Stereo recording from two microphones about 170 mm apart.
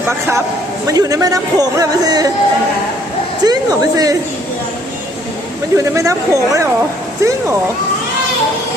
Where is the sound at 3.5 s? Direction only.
20° right (ahead or behind).